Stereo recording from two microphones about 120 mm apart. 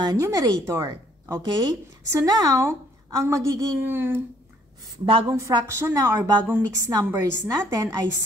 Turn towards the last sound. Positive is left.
turn(degrees=-30)  # may be behind; listen again after turning